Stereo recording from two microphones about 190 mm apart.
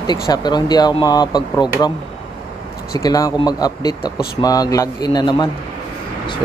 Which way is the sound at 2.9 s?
20° left (ahead or behind).